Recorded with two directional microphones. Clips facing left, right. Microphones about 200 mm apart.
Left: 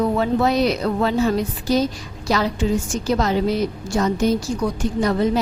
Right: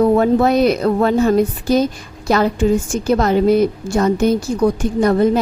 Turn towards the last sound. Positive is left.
turn(degrees=-50)  # may be behind; listen again after turning